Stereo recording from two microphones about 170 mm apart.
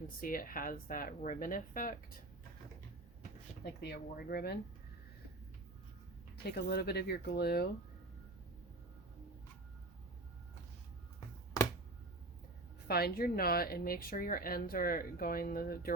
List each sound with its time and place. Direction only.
0.2 s speech: 55° left (ahead or behind)
3.6 s speech: 75° left (ahead or behind)
6.3 s speech: 70° left (ahead or behind)
12.9 s speech: 65° left (ahead or behind)